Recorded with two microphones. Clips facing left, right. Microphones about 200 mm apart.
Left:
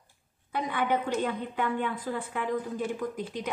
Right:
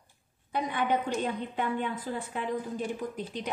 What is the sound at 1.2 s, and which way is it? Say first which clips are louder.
A woman's voice: left 1 dB; 25° right (ahead or behind).